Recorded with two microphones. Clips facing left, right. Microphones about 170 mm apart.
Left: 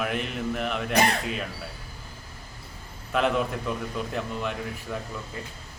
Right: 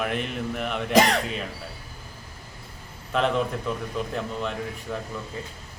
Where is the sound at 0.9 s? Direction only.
90° right.